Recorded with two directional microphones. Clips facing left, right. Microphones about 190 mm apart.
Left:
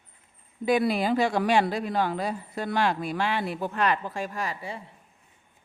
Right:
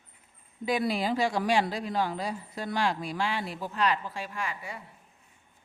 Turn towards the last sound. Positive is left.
turn(degrees=35)  # may be behind; listen again after turning